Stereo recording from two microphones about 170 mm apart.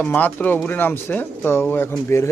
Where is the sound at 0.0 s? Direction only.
10° left (ahead or behind).